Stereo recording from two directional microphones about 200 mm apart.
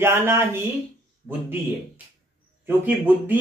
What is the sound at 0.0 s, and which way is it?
Speech, 10° right (ahead or behind).